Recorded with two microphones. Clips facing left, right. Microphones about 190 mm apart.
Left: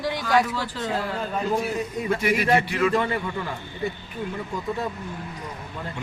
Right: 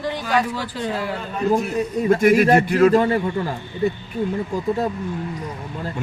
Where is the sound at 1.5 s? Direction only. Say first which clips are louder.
Right 5 dB; 50° right (ahead or behind).